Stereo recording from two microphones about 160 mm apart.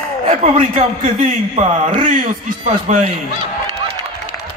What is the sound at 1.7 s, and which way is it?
A man's voice, 50° right (ahead or behind).